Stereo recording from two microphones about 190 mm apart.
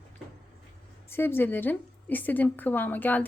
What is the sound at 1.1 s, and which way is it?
A woman's voice, 10° left (ahead or behind).